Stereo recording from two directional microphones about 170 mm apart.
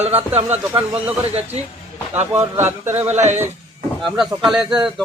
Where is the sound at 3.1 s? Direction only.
40° right (ahead or behind).